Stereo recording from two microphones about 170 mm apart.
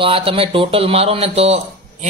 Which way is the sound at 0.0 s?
30° right (ahead or behind).